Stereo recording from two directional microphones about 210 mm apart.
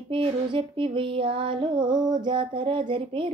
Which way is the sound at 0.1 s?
25° right (ahead or behind).